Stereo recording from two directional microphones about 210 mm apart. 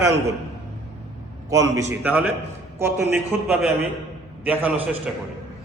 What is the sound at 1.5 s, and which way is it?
A man's voice, 15° right (ahead or behind).